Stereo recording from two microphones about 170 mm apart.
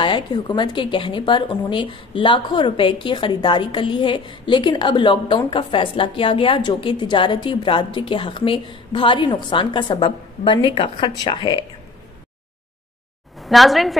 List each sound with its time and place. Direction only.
0.0 s a woman's voice: 25° left (ahead or behind)
13.4 s a woman's voice: centre (ahead or behind)